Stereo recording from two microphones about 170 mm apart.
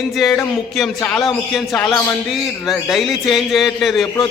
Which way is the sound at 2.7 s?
Centre (ahead or behind).